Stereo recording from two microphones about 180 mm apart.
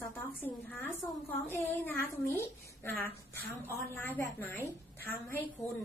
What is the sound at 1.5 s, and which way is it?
A child's voice, 10° left (ahead or behind).